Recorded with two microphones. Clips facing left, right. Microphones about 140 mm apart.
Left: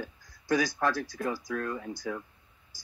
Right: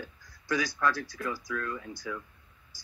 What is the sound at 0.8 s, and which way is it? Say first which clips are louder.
Speech: left 1 dB; 45° left (ahead or behind).